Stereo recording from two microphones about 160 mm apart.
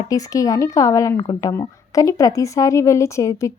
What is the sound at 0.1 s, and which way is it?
A woman's voice, 20° left (ahead or behind).